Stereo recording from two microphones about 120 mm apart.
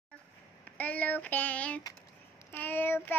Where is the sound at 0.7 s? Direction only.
15° left (ahead or behind).